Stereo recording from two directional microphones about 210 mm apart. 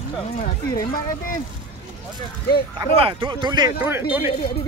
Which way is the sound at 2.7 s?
25° right (ahead or behind).